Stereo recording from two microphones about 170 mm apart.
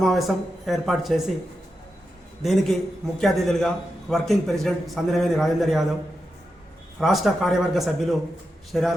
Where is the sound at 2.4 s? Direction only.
Centre (ahead or behind).